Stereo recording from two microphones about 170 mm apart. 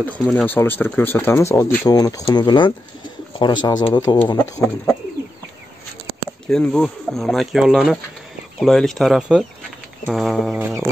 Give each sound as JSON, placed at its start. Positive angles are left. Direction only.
{"t": 0.0, "sound": "speech", "side_deg": 10}
{"t": 6.4, "sound": "speech", "side_deg": 5}